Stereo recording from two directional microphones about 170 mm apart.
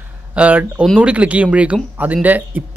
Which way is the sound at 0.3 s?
10° right (ahead or behind).